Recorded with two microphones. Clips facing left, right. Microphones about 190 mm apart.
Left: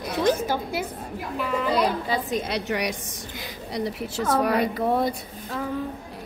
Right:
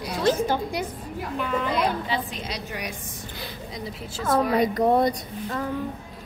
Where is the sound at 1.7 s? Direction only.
40° left (ahead or behind); by 4.6 s 65° left (ahead or behind).